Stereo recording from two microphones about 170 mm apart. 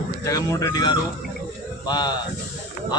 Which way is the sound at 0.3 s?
20° left (ahead or behind).